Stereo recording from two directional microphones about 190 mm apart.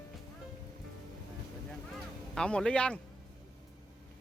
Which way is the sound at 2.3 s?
5° left (ahead or behind).